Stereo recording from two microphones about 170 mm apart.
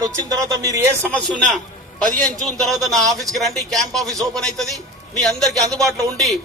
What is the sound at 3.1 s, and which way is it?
Speech, 20° right (ahead or behind).